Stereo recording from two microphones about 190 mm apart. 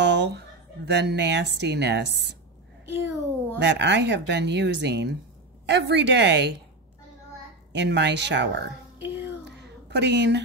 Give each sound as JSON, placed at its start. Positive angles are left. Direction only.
{"t": 0.0, "sound": "speech", "side_deg": -65}
{"t": 2.8, "sound": "a woman's voice", "side_deg": -15}
{"t": 3.5, "sound": "speech", "side_deg": -65}
{"t": 7.7, "sound": "speech", "side_deg": -65}
{"t": 8.9, "sound": "a sound", "side_deg": -10}
{"t": 9.4, "sound": "a sound", "side_deg": -65}